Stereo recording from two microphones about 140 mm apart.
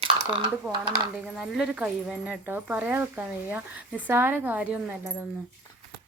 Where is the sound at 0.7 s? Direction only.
35° right (ahead or behind).